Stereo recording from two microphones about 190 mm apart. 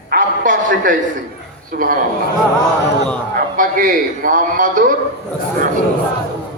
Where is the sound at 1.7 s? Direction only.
45° right (ahead or behind).